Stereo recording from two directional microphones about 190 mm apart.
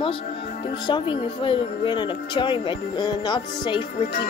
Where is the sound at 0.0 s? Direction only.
30° left (ahead or behind).